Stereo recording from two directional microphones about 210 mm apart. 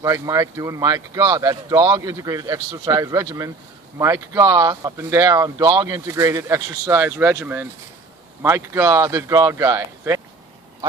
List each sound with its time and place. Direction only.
0.0 s speech: 15° right (ahead or behind)